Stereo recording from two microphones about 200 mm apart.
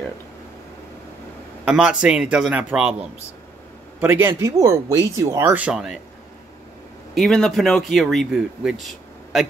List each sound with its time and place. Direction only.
1.6 s speech: 5° right (ahead or behind)
7.2 s speech: 5° left (ahead or behind)